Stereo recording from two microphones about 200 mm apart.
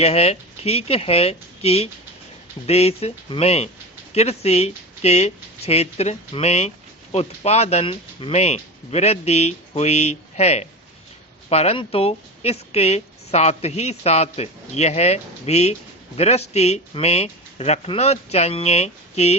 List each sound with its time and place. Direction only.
0.0 s a woman's voice: 30° left (ahead or behind)